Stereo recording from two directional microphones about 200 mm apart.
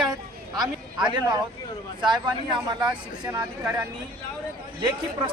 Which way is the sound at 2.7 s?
20° right (ahead or behind).